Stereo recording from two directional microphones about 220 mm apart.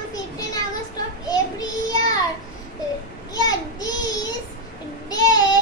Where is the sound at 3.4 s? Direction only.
15° left (ahead or behind).